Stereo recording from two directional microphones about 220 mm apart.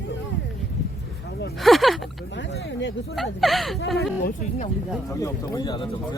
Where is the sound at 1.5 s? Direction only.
Centre (ahead or behind).